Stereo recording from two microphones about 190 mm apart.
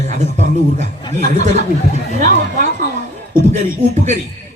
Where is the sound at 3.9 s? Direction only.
40° right (ahead or behind).